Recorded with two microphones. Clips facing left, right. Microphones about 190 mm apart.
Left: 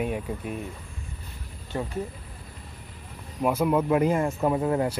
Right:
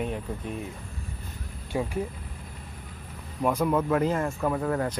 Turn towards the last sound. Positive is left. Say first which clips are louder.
# left 3 dB
turn(degrees=20)  # may be behind; listen again after turning